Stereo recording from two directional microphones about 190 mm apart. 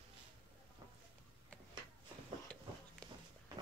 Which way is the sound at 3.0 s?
5° left (ahead or behind).